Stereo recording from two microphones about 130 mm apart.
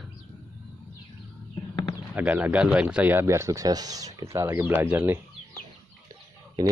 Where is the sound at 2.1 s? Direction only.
10° right (ahead or behind).